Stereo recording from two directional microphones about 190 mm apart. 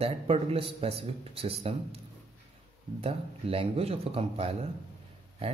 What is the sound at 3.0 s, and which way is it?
Speech, 30° right (ahead or behind).